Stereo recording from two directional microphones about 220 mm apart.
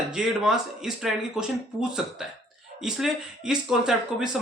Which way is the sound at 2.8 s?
5° right (ahead or behind).